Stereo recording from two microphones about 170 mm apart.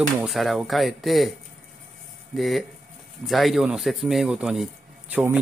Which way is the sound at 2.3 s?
Centre (ahead or behind).